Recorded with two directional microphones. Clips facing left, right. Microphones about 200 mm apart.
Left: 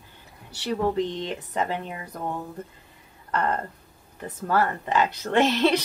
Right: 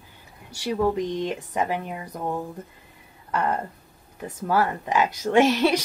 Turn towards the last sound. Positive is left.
turn(degrees=-10)  # may be behind; listen again after turning